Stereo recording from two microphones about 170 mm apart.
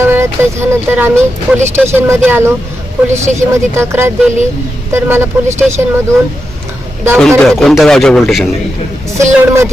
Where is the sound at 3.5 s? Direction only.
15° right (ahead or behind).